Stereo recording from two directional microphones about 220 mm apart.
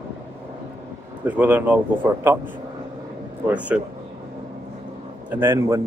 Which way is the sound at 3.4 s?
5° right (ahead or behind).